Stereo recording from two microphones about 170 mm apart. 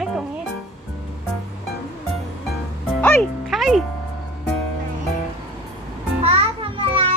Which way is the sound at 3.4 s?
Centre (ahead or behind).